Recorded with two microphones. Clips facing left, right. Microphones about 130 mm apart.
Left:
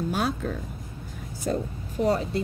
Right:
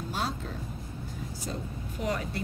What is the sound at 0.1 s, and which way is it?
Music, 60° left (ahead or behind).